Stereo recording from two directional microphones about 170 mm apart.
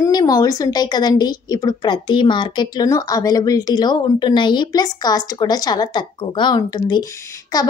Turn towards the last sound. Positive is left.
turn(degrees=20)  # may be behind; listen again after turning